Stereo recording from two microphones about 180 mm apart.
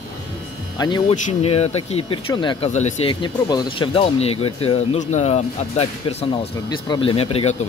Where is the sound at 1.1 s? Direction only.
40° left (ahead or behind).